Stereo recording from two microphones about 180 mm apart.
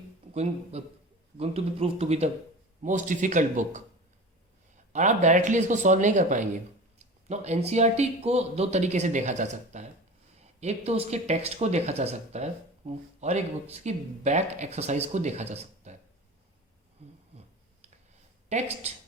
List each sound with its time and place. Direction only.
0.7 s speech: 35° right (ahead or behind)
4.9 s speech: 40° right (ahead or behind)
18.4 s speech: 40° right (ahead or behind)